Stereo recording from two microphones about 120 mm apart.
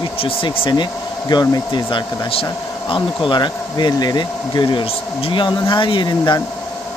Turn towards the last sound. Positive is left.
turn(degrees=40)  # may be behind; listen again after turning